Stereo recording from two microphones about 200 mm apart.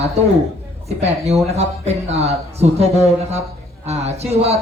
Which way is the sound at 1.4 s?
30° right (ahead or behind).